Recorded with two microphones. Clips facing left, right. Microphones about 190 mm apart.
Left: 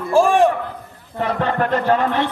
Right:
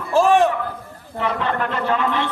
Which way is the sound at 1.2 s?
45° left (ahead or behind).